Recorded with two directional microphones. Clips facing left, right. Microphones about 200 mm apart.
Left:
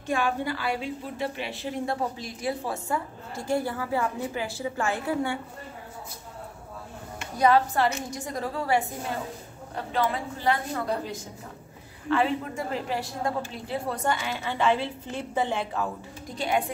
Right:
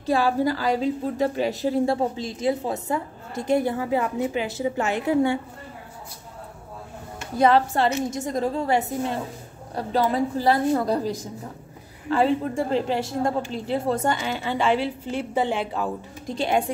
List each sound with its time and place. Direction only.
0.0 s a woman's voice: 35° right (ahead or behind)
7.3 s a woman's voice: 25° right (ahead or behind)
9.8 s a woman's voice: 40° right (ahead or behind)
14.6 s a woman's voice: 10° right (ahead or behind)
16.3 s a woman's voice: 25° right (ahead or behind)